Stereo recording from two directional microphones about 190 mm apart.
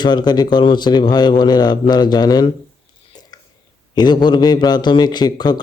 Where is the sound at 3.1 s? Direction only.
20° left (ahead or behind).